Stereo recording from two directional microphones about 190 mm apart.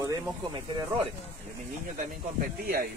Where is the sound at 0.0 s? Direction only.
20° right (ahead or behind).